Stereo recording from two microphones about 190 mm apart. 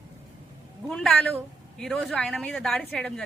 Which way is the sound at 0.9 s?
5° left (ahead or behind).